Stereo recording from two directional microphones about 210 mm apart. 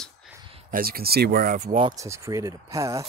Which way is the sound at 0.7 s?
45° right (ahead or behind).